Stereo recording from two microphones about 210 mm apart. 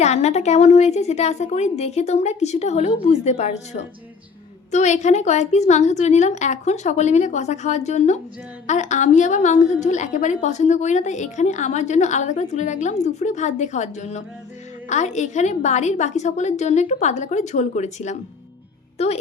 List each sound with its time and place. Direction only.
0.0 s a woman's voice: 30° left (ahead or behind)